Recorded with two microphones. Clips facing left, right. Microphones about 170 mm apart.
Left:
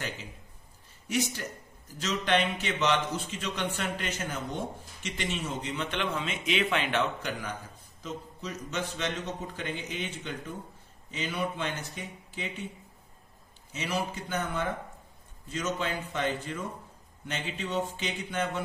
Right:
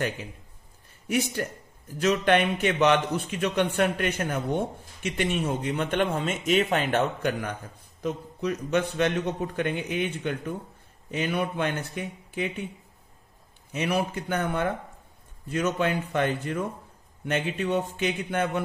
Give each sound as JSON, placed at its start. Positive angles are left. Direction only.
{"t": 1.0, "sound": "a man's voice", "side_deg": -55}
{"t": 13.7, "sound": "a man's voice", "side_deg": -60}